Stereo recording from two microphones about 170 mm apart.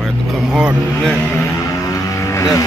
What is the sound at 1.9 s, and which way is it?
Music, 20° left (ahead or behind).